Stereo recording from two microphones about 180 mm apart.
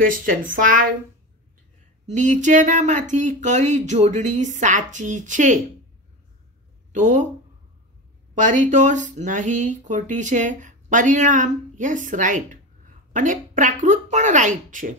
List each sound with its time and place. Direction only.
0.0 s speech: 50° right (ahead or behind)
2.0 s speech: 40° right (ahead or behind)
6.9 s speech: 45° right (ahead or behind)
8.4 s speech: 45° right (ahead or behind)